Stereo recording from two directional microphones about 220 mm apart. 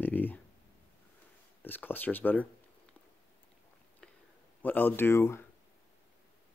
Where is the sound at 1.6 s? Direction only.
10° left (ahead or behind).